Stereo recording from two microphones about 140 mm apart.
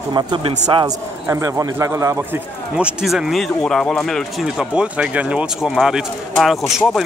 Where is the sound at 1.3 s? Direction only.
20° right (ahead or behind).